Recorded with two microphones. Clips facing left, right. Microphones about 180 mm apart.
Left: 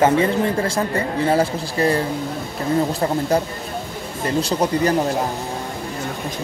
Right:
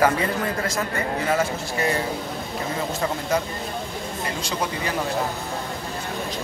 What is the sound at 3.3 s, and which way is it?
Speech, 35° left (ahead or behind).